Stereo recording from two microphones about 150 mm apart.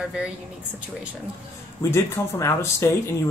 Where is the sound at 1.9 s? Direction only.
15° left (ahead or behind).